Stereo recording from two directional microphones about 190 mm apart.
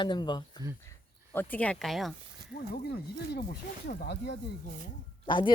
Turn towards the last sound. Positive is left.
turn(degrees=25)  # may be behind; listen again after turning